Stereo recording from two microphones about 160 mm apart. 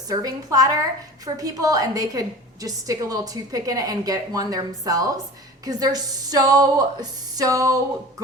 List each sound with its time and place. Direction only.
0.1 s a woman's voice: 25° right (ahead or behind)